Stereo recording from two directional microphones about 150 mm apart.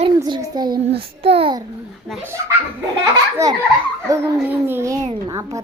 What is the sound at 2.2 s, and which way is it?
Speech, 15° right (ahead or behind).